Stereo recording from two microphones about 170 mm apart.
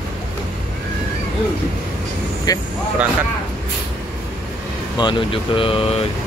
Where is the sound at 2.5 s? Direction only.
20° left (ahead or behind).